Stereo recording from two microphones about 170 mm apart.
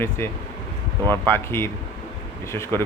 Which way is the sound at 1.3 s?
15° left (ahead or behind).